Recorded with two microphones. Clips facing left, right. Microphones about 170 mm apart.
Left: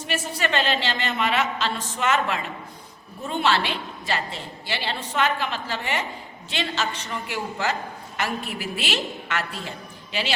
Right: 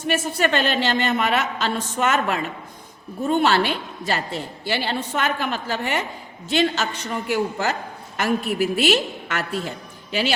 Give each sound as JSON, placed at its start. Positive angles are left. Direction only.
{"t": 0.1, "sound": "a woman's voice", "side_deg": -50}